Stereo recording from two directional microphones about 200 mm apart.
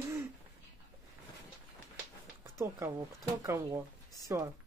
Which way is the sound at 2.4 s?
15° right (ahead or behind).